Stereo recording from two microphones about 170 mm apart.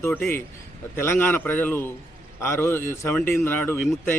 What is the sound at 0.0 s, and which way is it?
Speech, 15° left (ahead or behind).